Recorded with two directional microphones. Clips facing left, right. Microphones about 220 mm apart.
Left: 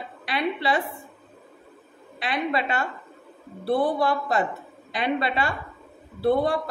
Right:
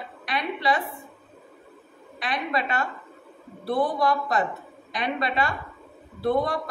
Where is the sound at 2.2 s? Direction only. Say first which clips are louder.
Left 2 dB; 30° left (ahead or behind).